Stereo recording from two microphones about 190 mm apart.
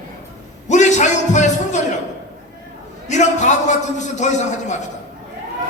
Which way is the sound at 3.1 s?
40° left (ahead or behind).